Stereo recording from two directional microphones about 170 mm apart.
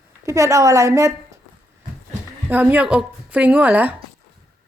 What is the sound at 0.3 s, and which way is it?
A woman's voice, 20° right (ahead or behind).